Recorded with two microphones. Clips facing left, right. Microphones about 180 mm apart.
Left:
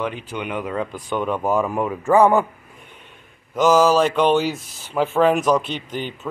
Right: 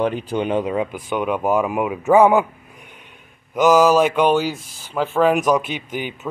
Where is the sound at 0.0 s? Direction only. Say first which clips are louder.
Right 6 dB; 35° right (ahead or behind).